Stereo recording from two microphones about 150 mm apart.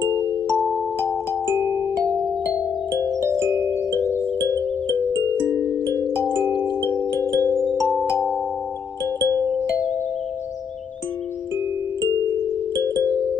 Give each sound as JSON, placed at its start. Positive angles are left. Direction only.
{"t": 2.5, "sound": "music", "side_deg": 20}
{"t": 3.3, "sound": "music", "side_deg": -15}
{"t": 3.9, "sound": "music", "side_deg": 20}
{"t": 5.5, "sound": "glockenspiel", "side_deg": -20}
{"t": 6.8, "sound": "music", "side_deg": 15}